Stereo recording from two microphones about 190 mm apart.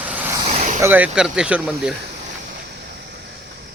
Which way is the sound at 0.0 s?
10° right (ahead or behind).